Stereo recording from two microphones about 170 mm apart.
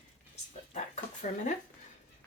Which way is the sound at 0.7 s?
45° left (ahead or behind).